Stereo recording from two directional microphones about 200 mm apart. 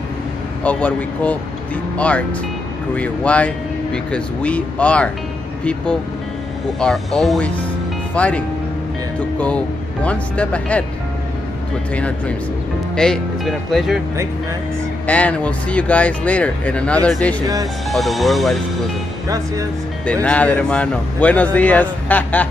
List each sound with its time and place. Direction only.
0.7 s speech: 5° left (ahead or behind)
10.0 s speech: 5° left (ahead or behind)
11.9 s speech: 5° left (ahead or behind)
15.0 s speech: 5° left (ahead or behind)
19.2 s speech: 15° right (ahead or behind)
20.2 s speech: 5° left (ahead or behind)